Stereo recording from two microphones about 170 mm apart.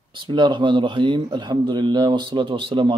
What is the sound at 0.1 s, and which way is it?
A man's voice, 30° right (ahead or behind).